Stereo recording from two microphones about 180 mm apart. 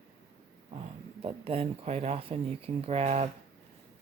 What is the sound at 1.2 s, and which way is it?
Speech, 30° right (ahead or behind).